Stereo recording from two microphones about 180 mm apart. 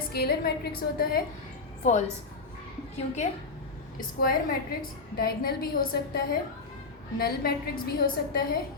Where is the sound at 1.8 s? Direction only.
40° left (ahead or behind).